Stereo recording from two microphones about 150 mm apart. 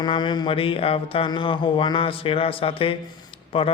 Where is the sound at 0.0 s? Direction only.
30° left (ahead or behind).